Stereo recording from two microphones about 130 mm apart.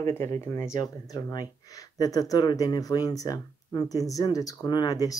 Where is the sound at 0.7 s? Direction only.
30° left (ahead or behind).